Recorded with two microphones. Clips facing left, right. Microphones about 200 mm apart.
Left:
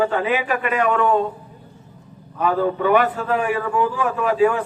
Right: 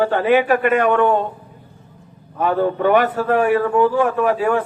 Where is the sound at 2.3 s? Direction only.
50° right (ahead or behind).